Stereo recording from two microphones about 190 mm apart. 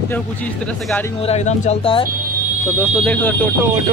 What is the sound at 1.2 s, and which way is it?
Speech, 35° left (ahead or behind).